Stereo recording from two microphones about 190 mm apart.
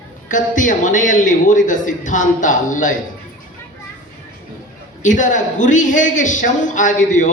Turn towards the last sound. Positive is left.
turn(degrees=40)  # may be behind; listen again after turning